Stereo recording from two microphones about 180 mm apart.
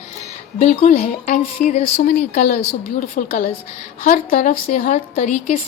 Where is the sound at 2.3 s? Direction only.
60° left (ahead or behind).